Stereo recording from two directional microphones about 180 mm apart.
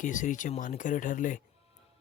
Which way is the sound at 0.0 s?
45° left (ahead or behind).